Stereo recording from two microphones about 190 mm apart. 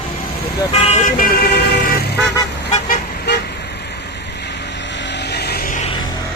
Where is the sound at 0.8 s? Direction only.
35° left (ahead or behind).